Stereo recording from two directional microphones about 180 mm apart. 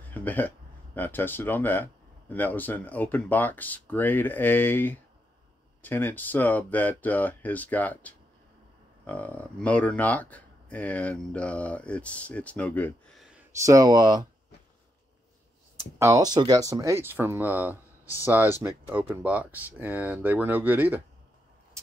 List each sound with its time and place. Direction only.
0.1 s speech: 10° left (ahead or behind)
13.5 s speech: 15° right (ahead or behind)
16.0 s speech: 20° right (ahead or behind)